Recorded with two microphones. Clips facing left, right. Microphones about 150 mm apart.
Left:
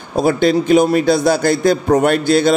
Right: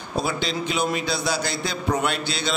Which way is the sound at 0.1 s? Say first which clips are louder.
Left 12 dB; 50° left (ahead or behind).